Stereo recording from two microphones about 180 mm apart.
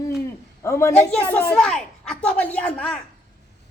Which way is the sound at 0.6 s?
15° left (ahead or behind).